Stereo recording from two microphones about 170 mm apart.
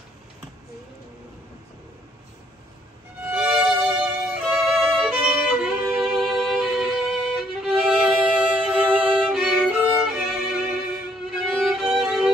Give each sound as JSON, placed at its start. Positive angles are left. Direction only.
{"t": 3.3, "sound": "violin", "side_deg": -5}
{"t": 10.1, "sound": "music", "side_deg": -5}
{"t": 11.3, "sound": "violin", "side_deg": 0}